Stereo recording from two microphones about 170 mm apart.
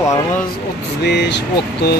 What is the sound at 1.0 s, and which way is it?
Speech, 90° left.